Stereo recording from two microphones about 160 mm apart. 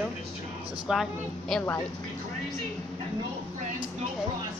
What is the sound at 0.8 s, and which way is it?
Speech, centre (ahead or behind).